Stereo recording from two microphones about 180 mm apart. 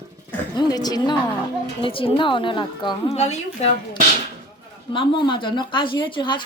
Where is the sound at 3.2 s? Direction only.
40° left (ahead or behind).